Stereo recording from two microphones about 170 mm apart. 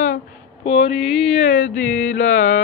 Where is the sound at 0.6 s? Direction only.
35° left (ahead or behind).